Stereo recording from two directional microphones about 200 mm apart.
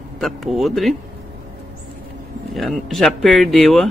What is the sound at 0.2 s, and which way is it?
Speech, centre (ahead or behind).